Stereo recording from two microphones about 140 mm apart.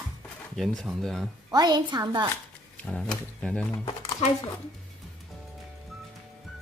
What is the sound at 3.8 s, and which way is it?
Speech, 30° left (ahead or behind).